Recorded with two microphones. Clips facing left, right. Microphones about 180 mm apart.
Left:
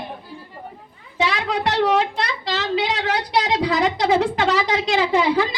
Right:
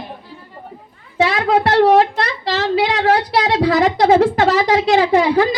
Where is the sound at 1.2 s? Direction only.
50° right (ahead or behind).